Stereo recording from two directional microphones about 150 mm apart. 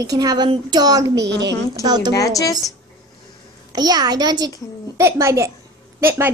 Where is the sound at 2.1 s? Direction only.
20° left (ahead or behind).